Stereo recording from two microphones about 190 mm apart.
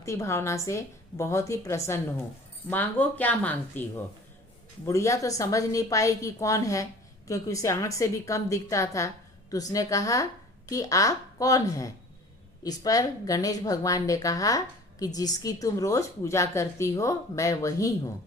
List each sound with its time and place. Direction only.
0.0 s a woman's voice: 15° left (ahead or behind)